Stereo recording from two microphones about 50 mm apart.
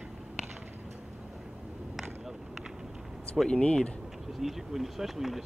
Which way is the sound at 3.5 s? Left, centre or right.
Centre.